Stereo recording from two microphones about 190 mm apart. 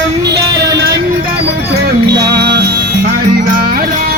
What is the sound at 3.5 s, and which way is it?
Music, 50° right (ahead or behind).